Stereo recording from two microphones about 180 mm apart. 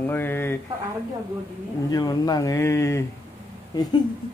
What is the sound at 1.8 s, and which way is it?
Speech, 20° left (ahead or behind).